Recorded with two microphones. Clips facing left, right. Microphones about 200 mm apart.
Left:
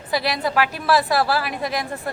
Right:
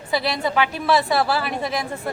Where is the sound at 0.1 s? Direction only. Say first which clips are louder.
Even; centre (ahead or behind).